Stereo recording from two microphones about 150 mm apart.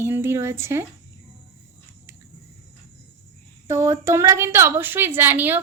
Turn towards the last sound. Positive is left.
turn(degrees=-15)  # may be behind; listen again after turning